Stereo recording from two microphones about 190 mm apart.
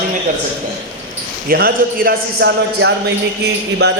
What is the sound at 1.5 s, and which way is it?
A man's voice, 50° right (ahead or behind).